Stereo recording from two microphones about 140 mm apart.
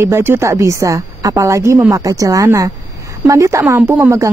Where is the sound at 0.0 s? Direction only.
15° right (ahead or behind).